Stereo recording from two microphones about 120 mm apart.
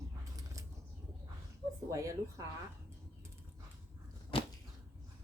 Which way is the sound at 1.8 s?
25° right (ahead or behind).